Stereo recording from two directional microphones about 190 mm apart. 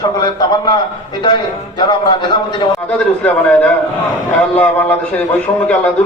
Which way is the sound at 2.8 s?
5° left (ahead or behind).